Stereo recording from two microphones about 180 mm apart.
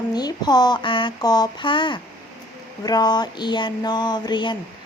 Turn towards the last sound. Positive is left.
turn(degrees=25)  # may be behind; listen again after turning